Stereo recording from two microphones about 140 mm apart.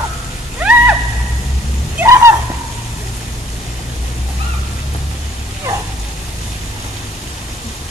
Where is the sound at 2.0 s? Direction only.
20° right (ahead or behind).